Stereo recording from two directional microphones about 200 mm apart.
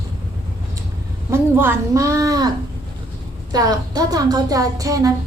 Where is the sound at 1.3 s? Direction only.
10° right (ahead or behind).